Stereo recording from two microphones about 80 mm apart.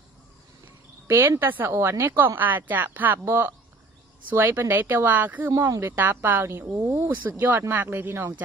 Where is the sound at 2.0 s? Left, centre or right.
Right.